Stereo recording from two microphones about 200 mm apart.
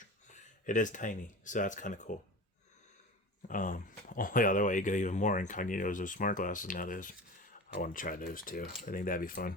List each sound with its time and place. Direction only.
0.3 s speech: 40° left (ahead or behind)
3.5 s speech: 40° left (ahead or behind)